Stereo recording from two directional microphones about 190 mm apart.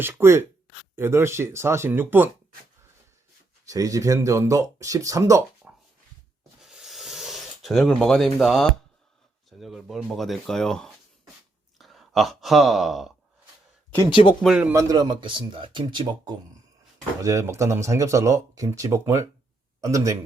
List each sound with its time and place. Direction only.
0.0 s speech: 15° right (ahead or behind)
3.7 s speech: 20° right (ahead or behind)
6.6 s a sound: centre (ahead or behind)
9.5 s speech: centre (ahead or behind)
11.8 s sigh: centre (ahead or behind)
14.1 s speech: 25° left (ahead or behind)
14.4 s speech: 5° right (ahead or behind)